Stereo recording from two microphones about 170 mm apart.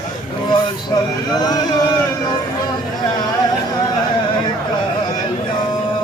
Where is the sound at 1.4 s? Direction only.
25° left (ahead or behind).